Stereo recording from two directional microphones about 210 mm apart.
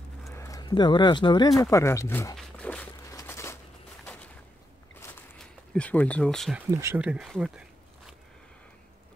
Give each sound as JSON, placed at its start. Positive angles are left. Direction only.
{"t": 0.3, "sound": "speech", "side_deg": 15}
{"t": 2.3, "sound": "dog", "side_deg": 5}
{"t": 4.0, "sound": "a sound", "side_deg": 5}
{"t": 6.7, "sound": "speech", "side_deg": -10}